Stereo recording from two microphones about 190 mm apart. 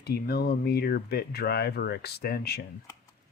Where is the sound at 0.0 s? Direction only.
55° left (ahead or behind).